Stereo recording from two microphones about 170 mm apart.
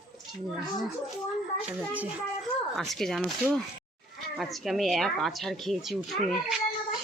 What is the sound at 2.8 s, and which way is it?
Speech, centre (ahead or behind).